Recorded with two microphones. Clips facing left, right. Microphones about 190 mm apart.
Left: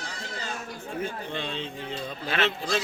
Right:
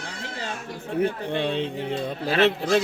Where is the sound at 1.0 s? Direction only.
65° right (ahead or behind).